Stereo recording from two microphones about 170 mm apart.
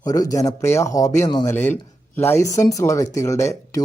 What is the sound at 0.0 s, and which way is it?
A man's voice, 20° left (ahead or behind).